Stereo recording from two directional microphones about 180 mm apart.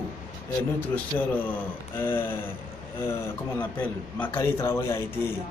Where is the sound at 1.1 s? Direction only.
10° left (ahead or behind).